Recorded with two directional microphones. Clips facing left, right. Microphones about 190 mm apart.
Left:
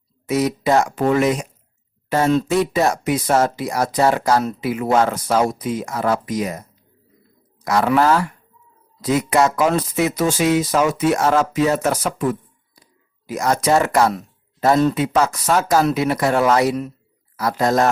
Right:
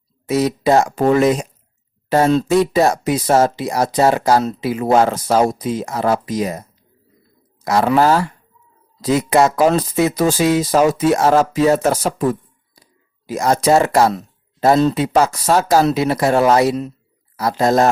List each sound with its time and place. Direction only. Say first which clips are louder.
0.3 s speech: right 3 dB; 30° right (ahead or behind)
7.6 s speech: right 2 dB; 25° right (ahead or behind)